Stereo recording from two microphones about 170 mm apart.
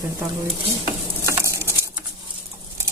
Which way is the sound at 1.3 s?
15° right (ahead or behind).